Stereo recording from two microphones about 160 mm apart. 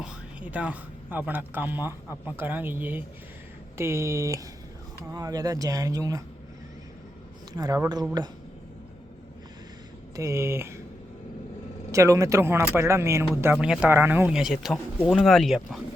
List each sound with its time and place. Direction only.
0.0 s speech: 10° right (ahead or behind)
7.5 s speech: 25° right (ahead or behind)
10.2 s speech: 20° right (ahead or behind)
11.9 s speech: 20° right (ahead or behind); by 15.8 s centre (ahead or behind)